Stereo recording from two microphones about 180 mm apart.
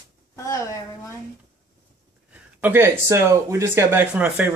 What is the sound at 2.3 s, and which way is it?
Speech, 10° right (ahead or behind).